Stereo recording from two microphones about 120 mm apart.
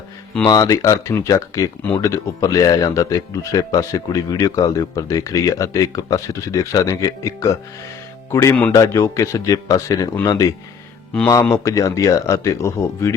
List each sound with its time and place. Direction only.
0.4 s speech: 30° left (ahead or behind)